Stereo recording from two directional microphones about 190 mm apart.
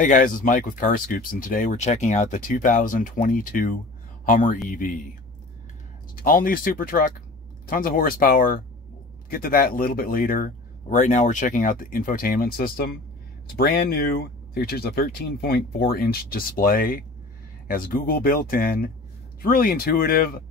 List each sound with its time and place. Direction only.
0.0 s speech: 45° left (ahead or behind)
6.1 s speech: 50° left (ahead or behind)